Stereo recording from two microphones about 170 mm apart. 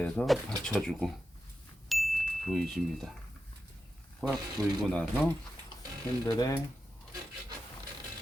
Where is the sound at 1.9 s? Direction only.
Centre (ahead or behind).